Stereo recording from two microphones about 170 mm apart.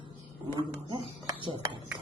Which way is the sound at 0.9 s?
30° right (ahead or behind).